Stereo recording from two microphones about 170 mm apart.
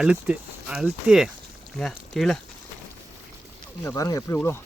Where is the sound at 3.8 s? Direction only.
20° left (ahead or behind).